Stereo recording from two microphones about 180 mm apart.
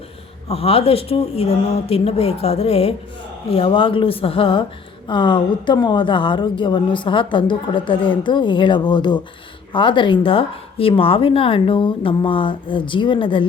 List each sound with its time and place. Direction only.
0.4 s a woman's voice: 35° left (ahead or behind)